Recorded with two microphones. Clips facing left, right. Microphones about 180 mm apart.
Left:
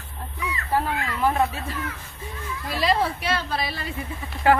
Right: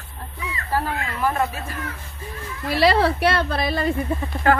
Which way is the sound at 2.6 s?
70° right (ahead or behind).